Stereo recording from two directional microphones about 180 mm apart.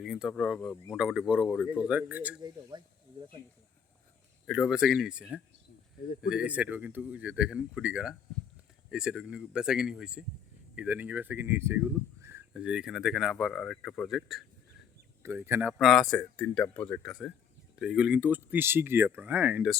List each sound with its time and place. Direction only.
0.0 s speech: 5° right (ahead or behind)
2.4 s speech: 20° right (ahead or behind)
4.4 s speech: centre (ahead or behind)
15.2 s speech: 10° right (ahead or behind)
15.8 s speech: centre (ahead or behind)